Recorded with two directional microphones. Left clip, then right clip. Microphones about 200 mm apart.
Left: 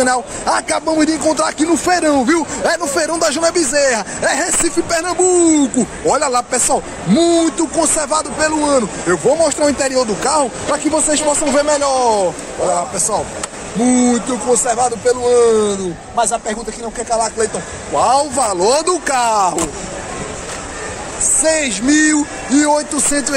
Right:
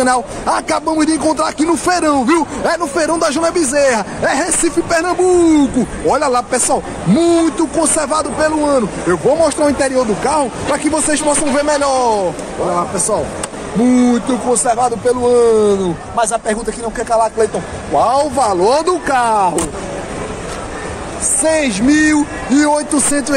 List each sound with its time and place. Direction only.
0.0 s speech: centre (ahead or behind)
10.9 s speech: 5° right (ahead or behind)
13.8 s speech: centre (ahead or behind)
16.2 s a man's voice: 30° right (ahead or behind)
17.1 s speech: 15° right (ahead or behind)
17.9 s speech: centre (ahead or behind)
21.4 s speech: centre (ahead or behind)